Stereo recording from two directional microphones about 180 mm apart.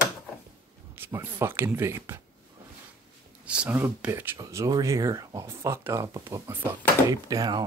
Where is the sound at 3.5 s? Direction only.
10° right (ahead or behind).